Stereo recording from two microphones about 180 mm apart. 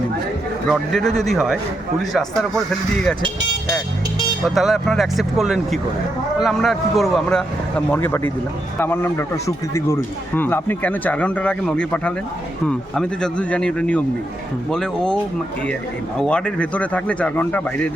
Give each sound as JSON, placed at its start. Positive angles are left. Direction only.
{"t": 0.7, "sound": "speech", "side_deg": 0}
{"t": 4.4, "sound": "speech", "side_deg": 0}